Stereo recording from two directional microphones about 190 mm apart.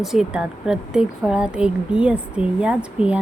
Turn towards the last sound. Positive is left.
turn(degrees=-5)  # may be behind; listen again after turning